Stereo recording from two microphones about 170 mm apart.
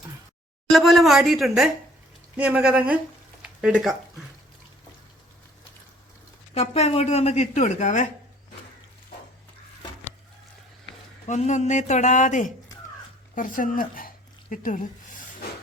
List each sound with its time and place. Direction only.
0.7 s speech: centre (ahead or behind)
3.4 s a sound: 5° right (ahead or behind)
6.5 s speech: 40° left (ahead or behind)
11.3 s speech: 45° left (ahead or behind)